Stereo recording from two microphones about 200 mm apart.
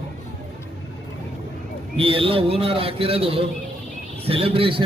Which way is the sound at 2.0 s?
25° right (ahead or behind).